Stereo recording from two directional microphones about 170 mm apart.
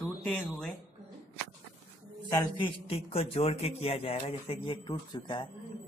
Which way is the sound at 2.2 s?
25° left (ahead or behind).